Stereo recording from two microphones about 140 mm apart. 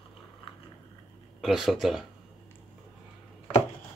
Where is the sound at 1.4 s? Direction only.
Centre (ahead or behind).